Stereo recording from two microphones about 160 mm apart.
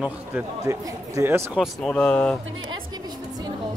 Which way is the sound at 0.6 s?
20° right (ahead or behind).